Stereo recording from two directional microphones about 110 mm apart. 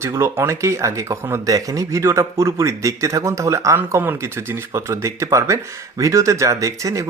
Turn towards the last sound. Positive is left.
turn(degrees=-30)  # may be behind; listen again after turning